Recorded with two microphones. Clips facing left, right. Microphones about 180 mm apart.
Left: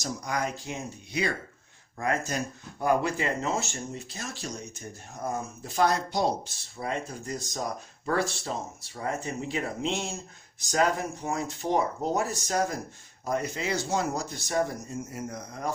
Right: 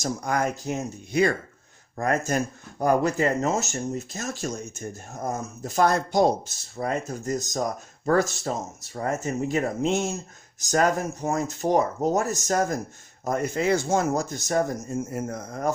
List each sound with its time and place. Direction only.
0.0 s speech: 50° right (ahead or behind)